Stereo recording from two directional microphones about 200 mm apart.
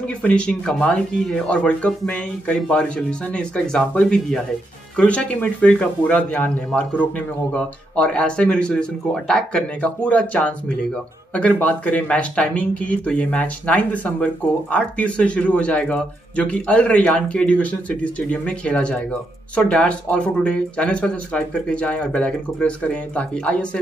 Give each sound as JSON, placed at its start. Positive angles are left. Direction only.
{"t": 0.2, "sound": "speech", "side_deg": 5}